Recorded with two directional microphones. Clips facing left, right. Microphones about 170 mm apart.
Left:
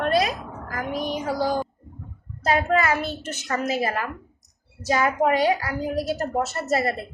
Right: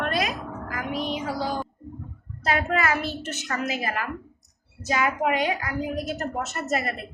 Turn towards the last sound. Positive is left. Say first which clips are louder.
# left 4 dB
turn(degrees=35)  # may be behind; listen again after turning